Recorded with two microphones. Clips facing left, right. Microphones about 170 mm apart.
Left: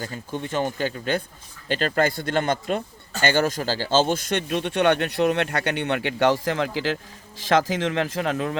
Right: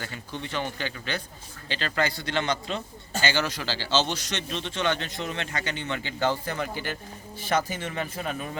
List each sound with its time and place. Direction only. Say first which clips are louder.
0.0 s a man's voice: left 5 dB; 45° left (ahead or behind); by 8.5 s 90° left